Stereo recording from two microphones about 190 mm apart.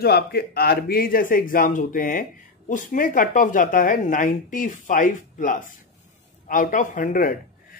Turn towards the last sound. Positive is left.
turn(degrees=45)  # may be behind; listen again after turning